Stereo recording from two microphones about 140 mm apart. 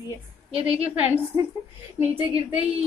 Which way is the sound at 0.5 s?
45° right (ahead or behind).